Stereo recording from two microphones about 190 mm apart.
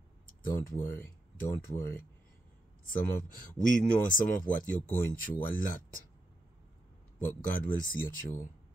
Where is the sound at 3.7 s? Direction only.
45° left (ahead or behind).